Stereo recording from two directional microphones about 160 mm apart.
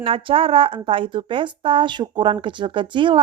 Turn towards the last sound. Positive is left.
turn(degrees=-30)  # may be behind; listen again after turning